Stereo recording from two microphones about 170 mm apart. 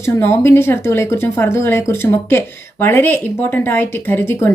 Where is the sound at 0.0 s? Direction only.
15° left (ahead or behind).